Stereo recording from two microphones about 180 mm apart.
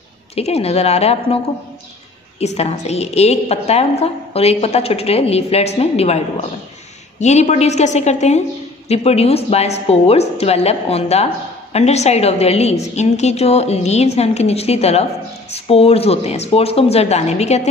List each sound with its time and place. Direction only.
0.4 s a woman's voice: 35° left (ahead or behind)
2.4 s a woman's voice: 35° left (ahead or behind)